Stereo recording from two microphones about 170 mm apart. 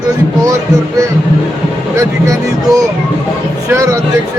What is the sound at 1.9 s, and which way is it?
Speech, 20° right (ahead or behind).